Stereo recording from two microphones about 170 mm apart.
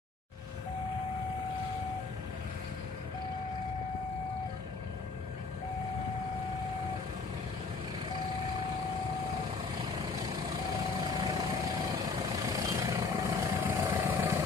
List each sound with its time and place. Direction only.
11.1 s vehicle: 20° right (ahead or behind)